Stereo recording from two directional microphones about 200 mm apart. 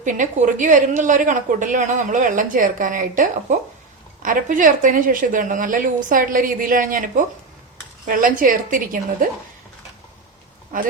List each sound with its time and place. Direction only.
0.0 s a woman's voice: 40° right (ahead or behind)
8.0 s a woman's voice: 40° right (ahead or behind)
10.7 s a woman's voice: 45° right (ahead or behind)